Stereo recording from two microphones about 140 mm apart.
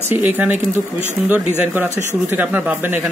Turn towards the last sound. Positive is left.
turn(degrees=-15)  # may be behind; listen again after turning